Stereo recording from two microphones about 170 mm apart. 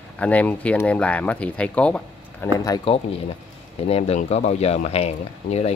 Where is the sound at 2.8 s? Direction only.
35° left (ahead or behind).